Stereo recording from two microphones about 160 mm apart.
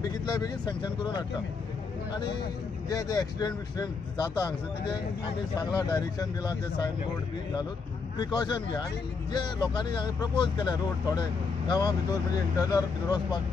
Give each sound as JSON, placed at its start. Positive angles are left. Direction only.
{"t": 0.0, "sound": "speech", "side_deg": 25}
{"t": 2.9, "sound": "speech", "side_deg": 20}
{"t": 8.2, "sound": "speech", "side_deg": 25}